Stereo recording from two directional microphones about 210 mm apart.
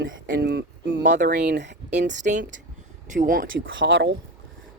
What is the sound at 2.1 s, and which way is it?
Speech, 35° right (ahead or behind).